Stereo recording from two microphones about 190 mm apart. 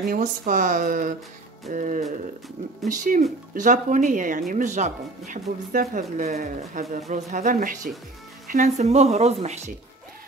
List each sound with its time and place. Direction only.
0.0 s speech: 45° right (ahead or behind)